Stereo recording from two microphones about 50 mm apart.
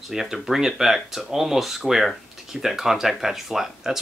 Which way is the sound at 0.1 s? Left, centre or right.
Centre.